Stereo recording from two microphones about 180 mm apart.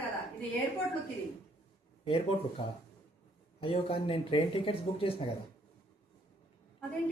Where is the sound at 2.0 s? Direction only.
30° left (ahead or behind).